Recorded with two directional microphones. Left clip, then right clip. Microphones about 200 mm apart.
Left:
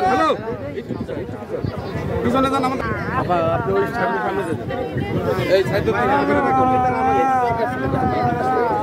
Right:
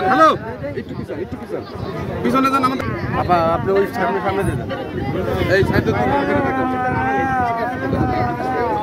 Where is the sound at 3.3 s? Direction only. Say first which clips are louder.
Right 4 dB; 45° right (ahead or behind).